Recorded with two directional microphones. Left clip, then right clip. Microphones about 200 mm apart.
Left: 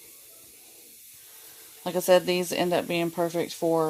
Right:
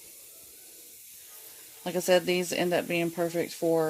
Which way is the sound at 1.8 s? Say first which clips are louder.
Left 3 dB; 10° left (ahead or behind).